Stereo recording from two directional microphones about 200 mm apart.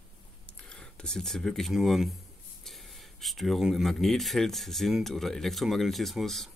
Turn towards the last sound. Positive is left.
turn(degrees=0)  # may be behind; listen again after turning